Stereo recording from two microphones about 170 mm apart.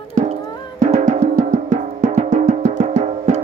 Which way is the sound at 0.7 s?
45° right (ahead or behind).